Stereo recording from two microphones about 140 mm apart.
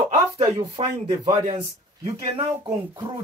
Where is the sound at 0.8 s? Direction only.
40° right (ahead or behind).